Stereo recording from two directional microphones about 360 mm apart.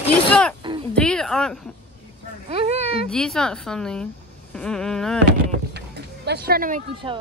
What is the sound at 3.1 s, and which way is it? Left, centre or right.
A woman's voice, centre.